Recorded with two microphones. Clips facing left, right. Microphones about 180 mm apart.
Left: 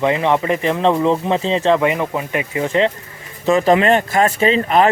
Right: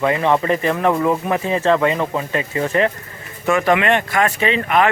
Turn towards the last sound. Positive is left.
turn(degrees=35)  # may be behind; listen again after turning